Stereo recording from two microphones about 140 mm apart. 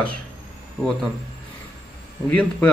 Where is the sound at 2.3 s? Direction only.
5° left (ahead or behind).